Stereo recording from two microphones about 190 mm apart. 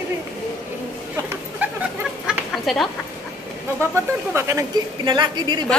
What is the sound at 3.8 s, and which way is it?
A woman's voice, 15° right (ahead or behind).